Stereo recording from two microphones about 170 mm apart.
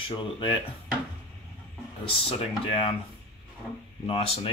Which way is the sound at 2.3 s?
30° left (ahead or behind).